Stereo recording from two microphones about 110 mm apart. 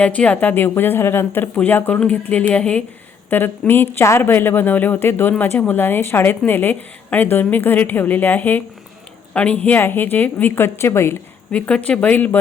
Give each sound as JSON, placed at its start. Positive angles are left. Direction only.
{"t": 0.0, "sound": "a woman's voice", "side_deg": 10}
{"t": 11.5, "sound": "a woman's voice", "side_deg": 10}